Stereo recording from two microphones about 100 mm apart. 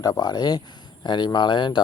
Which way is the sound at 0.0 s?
40° left (ahead or behind).